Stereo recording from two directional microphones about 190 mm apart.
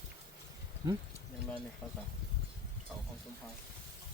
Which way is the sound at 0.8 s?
20° right (ahead or behind).